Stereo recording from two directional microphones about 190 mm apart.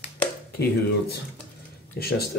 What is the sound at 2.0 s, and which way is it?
Speech, 55° left (ahead or behind).